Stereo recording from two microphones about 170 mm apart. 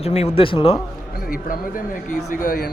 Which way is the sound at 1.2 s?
55° left (ahead or behind).